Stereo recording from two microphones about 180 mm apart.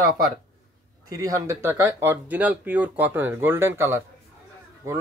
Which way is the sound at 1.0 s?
20° right (ahead or behind).